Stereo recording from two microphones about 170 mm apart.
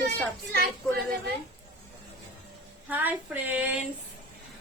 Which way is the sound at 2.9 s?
10° right (ahead or behind).